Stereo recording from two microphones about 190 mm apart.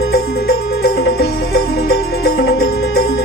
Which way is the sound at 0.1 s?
55° left (ahead or behind).